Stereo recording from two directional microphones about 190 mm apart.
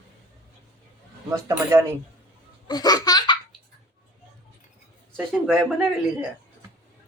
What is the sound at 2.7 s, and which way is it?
Laughter, 20° left (ahead or behind).